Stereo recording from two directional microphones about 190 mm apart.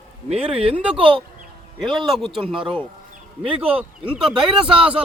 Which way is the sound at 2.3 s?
25° right (ahead or behind).